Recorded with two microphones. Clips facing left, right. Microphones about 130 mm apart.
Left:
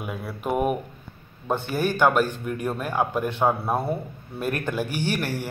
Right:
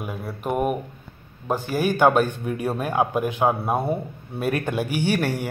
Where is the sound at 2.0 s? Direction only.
20° right (ahead or behind).